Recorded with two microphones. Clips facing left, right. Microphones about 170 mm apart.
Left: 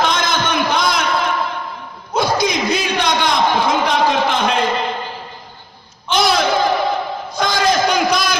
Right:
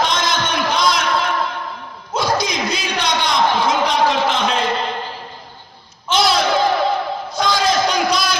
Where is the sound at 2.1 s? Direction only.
55° left (ahead or behind).